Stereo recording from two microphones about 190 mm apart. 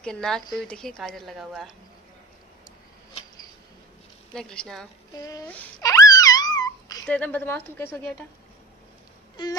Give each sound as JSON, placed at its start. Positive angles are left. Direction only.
{"t": 0.0, "sound": "a woman's voice", "side_deg": 5}
{"t": 4.3, "sound": "a woman's voice", "side_deg": 5}
{"t": 5.5, "sound": "wail", "side_deg": 10}
{"t": 7.1, "sound": "a woman's voice", "side_deg": 10}